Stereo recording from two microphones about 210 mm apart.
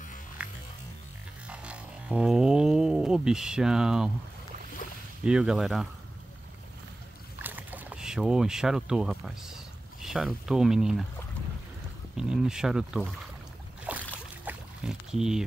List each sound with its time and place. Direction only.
0.4 s music: 5° right (ahead or behind)
4.8 s boat: 40° left (ahead or behind)
5.2 s speech: 5° right (ahead or behind)
7.4 s speech: 10° right (ahead or behind)
12.2 s speech: 5° right (ahead or behind)
13.9 s boat: 5° right (ahead or behind)
14.4 s rowboat: 5° right (ahead or behind)